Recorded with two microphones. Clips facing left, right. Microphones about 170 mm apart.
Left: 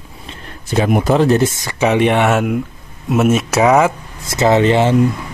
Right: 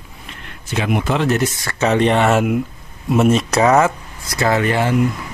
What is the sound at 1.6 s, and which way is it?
Speech, 15° left (ahead or behind).